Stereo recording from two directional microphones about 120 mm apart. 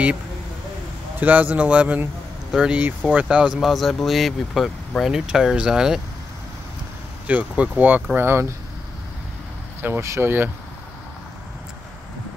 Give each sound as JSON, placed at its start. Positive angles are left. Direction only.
{"t": 1.2, "sound": "speech", "side_deg": -15}
{"t": 7.2, "sound": "speech", "side_deg": -10}
{"t": 9.8, "sound": "speech", "side_deg": -20}